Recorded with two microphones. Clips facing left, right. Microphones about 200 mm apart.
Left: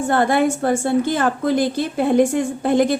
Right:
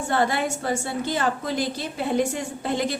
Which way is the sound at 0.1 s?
55° left (ahead or behind).